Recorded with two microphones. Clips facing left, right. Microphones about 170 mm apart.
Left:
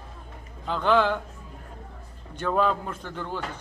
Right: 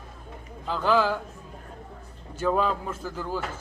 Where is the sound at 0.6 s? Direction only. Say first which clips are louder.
Left 1 dB; 5° right (ahead or behind).